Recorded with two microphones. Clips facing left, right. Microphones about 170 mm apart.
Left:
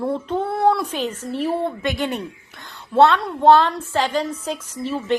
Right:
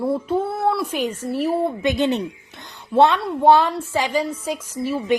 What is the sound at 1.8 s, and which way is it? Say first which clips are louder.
A woman's voice: right 4 dB; 20° right (ahead or behind).